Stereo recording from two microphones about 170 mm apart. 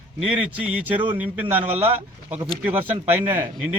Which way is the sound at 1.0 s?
10° right (ahead or behind).